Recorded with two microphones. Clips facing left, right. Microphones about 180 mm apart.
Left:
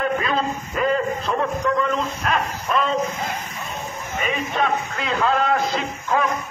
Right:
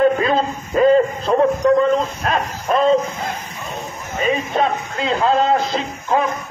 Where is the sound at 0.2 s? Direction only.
30° right (ahead or behind).